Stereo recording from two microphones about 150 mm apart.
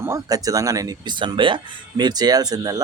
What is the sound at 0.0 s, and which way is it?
Speech, 20° right (ahead or behind).